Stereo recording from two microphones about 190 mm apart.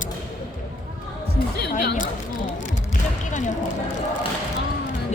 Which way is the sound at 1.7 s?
45° left (ahead or behind).